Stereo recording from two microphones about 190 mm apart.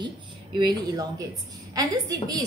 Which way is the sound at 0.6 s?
20° right (ahead or behind).